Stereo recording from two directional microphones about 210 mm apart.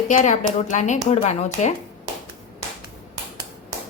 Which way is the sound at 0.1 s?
35° left (ahead or behind).